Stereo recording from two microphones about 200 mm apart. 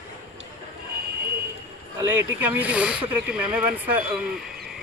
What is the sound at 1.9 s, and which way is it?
Speech, 10° right (ahead or behind).